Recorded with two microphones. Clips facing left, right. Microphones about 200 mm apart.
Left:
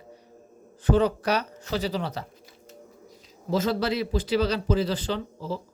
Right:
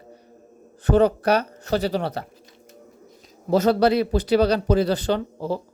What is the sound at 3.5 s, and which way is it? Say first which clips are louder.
Speech: right 7 dB; 60° right (ahead or behind).